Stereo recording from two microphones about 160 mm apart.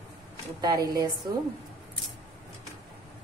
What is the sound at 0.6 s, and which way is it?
Speech, 25° right (ahead or behind).